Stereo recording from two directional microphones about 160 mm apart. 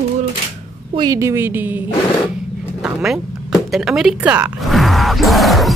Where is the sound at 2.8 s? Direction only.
Centre (ahead or behind).